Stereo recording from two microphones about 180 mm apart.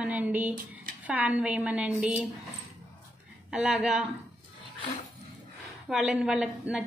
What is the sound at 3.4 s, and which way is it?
Speech, 5° right (ahead or behind).